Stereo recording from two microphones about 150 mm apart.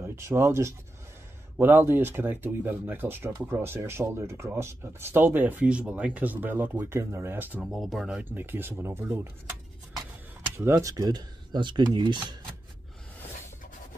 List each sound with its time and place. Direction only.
0.0 s speech: 15° right (ahead or behind)
7.7 s speech: centre (ahead or behind); by 12.4 s 30° right (ahead or behind)